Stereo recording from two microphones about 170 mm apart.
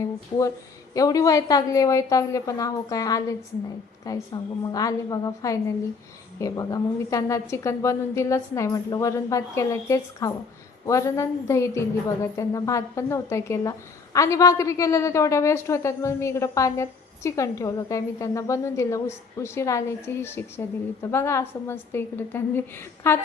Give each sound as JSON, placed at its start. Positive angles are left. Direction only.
{"t": 0.9, "sound": "a woman's voice", "side_deg": 20}